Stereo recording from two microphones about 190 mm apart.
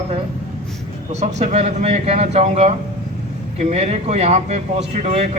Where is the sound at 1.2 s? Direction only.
35° right (ahead or behind).